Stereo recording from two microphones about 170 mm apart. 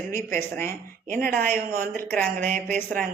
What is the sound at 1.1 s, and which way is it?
Speech, 55° right (ahead or behind).